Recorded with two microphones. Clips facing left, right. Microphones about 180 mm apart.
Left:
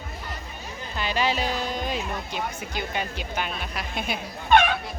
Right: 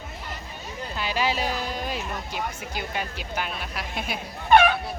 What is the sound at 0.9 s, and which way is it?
Speech, 5° right (ahead or behind).